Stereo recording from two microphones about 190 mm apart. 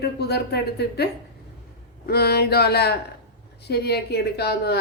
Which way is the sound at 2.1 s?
55° left (ahead or behind).